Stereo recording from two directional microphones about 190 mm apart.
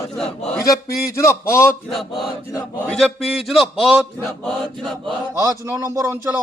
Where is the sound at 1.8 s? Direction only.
Centre (ahead or behind).